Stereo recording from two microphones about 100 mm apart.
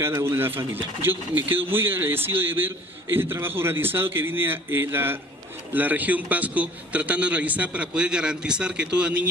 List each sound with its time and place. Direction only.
0.0 s a man's voice: 25° right (ahead or behind)